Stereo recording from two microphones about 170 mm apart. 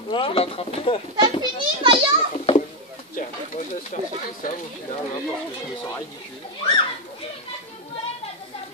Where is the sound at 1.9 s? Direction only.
30° left (ahead or behind).